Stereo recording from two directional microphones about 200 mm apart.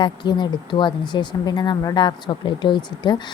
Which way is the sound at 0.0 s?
20° left (ahead or behind).